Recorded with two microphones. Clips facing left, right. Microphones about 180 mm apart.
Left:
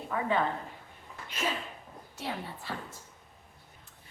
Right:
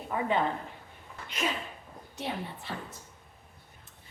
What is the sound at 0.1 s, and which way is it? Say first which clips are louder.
Speech: right 1 dB; 20° right (ahead or behind).